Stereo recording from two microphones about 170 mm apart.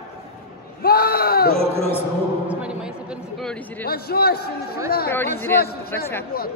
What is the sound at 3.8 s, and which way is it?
Speech, 65° left (ahead or behind).